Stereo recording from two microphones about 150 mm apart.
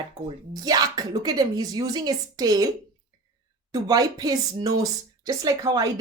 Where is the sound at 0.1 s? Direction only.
25° right (ahead or behind).